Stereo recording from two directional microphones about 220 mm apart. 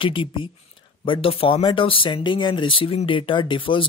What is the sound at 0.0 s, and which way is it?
Speech, 25° left (ahead or behind).